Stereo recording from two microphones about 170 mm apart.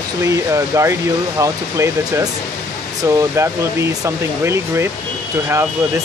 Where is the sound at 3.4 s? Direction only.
15° right (ahead or behind).